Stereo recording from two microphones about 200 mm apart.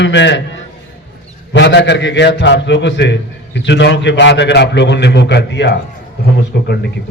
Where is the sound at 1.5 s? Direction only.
60° left (ahead or behind).